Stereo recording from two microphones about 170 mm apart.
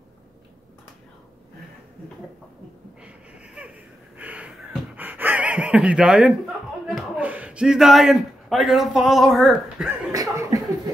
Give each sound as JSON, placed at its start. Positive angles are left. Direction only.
{"t": 3.0, "sound": "a sound", "side_deg": -5}
{"t": 4.2, "sound": "gasp", "side_deg": -5}
{"t": 6.9, "sound": "speech", "side_deg": -5}
{"t": 10.1, "sound": "chuckle", "side_deg": -20}